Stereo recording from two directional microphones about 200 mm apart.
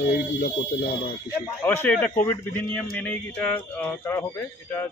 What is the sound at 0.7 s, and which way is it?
Speech, 55° left (ahead or behind).